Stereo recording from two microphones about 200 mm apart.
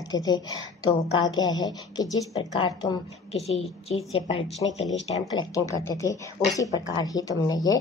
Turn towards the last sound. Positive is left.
turn(degrees=20)  # may be behind; listen again after turning